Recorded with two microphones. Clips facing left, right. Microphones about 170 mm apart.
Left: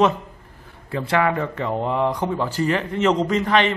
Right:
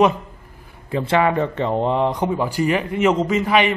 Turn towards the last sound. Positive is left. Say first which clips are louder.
# right 1 dB
turn(degrees=-10)  # may be behind; listen again after turning